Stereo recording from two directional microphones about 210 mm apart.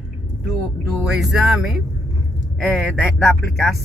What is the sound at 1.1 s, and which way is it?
Speech, centre (ahead or behind).